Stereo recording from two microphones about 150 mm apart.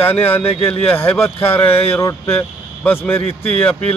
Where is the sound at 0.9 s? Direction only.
10° left (ahead or behind).